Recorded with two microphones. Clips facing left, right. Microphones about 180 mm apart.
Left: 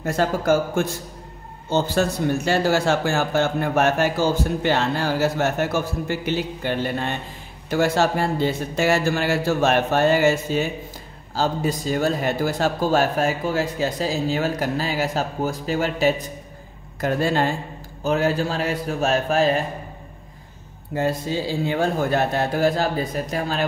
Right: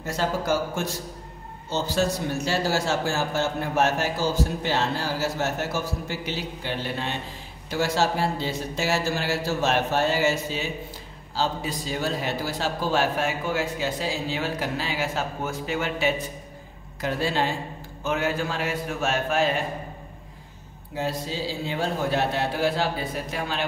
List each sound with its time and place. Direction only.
0.0 s a man's voice: 55° left (ahead or behind)
18.0 s a man's voice: 35° left (ahead or behind)
20.9 s a man's voice: 50° left (ahead or behind)